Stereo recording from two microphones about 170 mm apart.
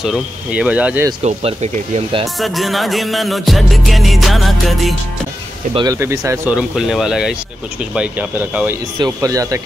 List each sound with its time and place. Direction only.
0.0 s speech: 5° right (ahead or behind)
1.2 s speech: 40° right (ahead or behind)
2.4 s music: centre (ahead or behind)
5.8 s speech: 20° right (ahead or behind)
6.5 s music: 5° right (ahead or behind)
7.9 s speech: 10° right (ahead or behind)
8.9 s speech: 20° right (ahead or behind)